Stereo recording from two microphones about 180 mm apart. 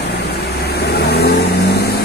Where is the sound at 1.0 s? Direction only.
65° left (ahead or behind).